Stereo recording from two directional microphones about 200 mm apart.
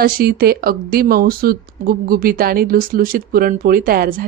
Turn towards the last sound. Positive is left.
turn(degrees=-45)  # may be behind; listen again after turning